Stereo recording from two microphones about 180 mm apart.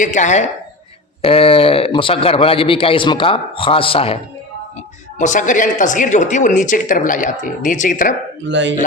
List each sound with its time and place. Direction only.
0.0 s a man's voice: 40° left (ahead or behind)
5.2 s speech: 45° left (ahead or behind)
8.4 s speech: 80° right